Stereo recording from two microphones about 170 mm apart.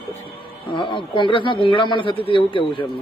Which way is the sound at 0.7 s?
30° left (ahead or behind).